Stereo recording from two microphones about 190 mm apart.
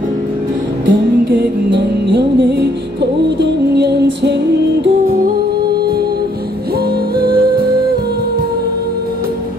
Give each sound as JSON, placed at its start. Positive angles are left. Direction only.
{"t": 0.8, "sound": "music", "side_deg": -65}
{"t": 7.2, "sound": "music", "side_deg": -55}